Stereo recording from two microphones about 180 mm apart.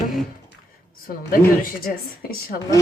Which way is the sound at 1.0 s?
50° left (ahead or behind).